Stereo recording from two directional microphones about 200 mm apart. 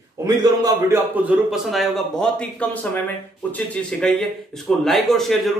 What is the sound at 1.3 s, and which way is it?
Speech, 5° right (ahead or behind).